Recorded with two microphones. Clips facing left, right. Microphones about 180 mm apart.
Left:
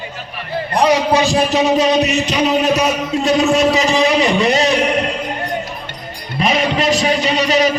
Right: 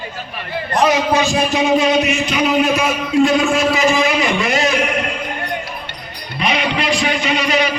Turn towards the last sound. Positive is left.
turn(degrees=40)  # may be behind; listen again after turning